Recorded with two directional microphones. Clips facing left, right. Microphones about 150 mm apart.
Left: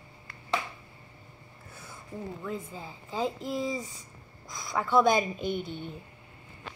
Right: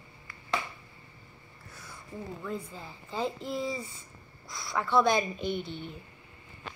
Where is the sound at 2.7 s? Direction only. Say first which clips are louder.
Left 2 dB; 15° left (ahead or behind).